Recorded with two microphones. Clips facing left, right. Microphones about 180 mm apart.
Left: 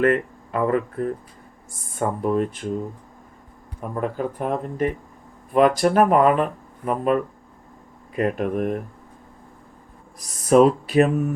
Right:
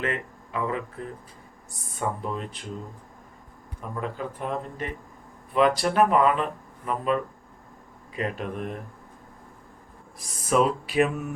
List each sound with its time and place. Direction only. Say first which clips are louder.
0.0 s speech: left 11 dB; 50° left (ahead or behind)
3.9 s speech: left 7 dB; 50° left (ahead or behind)
10.2 s speech: left 8 dB; 40° left (ahead or behind)